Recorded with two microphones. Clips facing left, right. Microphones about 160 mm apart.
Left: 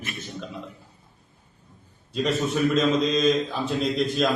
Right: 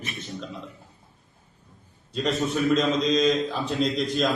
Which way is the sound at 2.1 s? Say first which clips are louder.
Left 1 dB; centre (ahead or behind).